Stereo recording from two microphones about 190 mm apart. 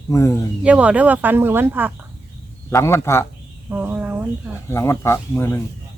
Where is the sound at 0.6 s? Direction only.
5° right (ahead or behind).